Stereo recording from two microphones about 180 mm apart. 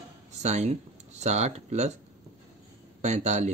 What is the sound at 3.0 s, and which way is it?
Speech, 40° right (ahead or behind).